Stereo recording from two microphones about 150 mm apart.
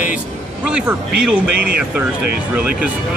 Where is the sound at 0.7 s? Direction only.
10° right (ahead or behind).